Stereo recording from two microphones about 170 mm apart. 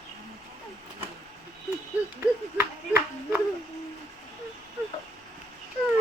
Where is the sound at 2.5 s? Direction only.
10° right (ahead or behind).